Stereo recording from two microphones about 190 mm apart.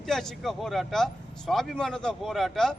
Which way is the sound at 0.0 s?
Centre (ahead or behind).